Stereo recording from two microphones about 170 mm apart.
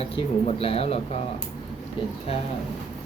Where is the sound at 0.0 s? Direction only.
35° left (ahead or behind).